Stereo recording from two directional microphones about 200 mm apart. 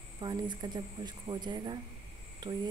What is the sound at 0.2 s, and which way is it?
A woman's voice, 20° right (ahead or behind).